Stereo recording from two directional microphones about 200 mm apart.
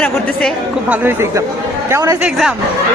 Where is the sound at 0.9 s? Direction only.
10° right (ahead or behind).